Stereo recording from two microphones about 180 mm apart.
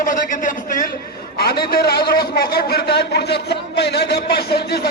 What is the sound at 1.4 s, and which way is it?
A man's voice, 60° left (ahead or behind).